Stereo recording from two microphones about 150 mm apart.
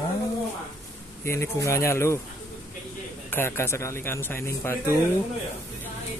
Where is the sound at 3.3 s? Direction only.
15° left (ahead or behind).